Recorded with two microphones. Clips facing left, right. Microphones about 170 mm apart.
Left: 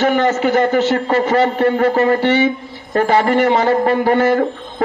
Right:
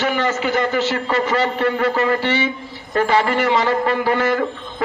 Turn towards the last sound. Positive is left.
turn(degrees=45)  # may be behind; listen again after turning